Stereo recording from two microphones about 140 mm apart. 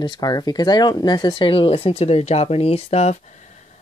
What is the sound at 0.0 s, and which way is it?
Speech, 30° left (ahead or behind).